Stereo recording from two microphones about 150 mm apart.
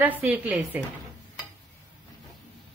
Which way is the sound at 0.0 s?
10° right (ahead or behind).